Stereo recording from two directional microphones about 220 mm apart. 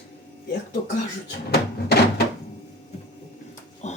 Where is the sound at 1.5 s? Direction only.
45° left (ahead or behind).